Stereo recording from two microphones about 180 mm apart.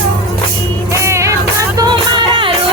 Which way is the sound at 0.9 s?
15° right (ahead or behind).